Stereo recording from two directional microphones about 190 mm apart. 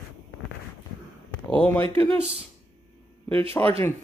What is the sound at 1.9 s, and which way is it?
Speech, 10° left (ahead or behind).